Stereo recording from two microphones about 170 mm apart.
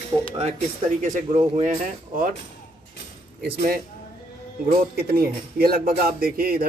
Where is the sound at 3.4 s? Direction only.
65° right (ahead or behind).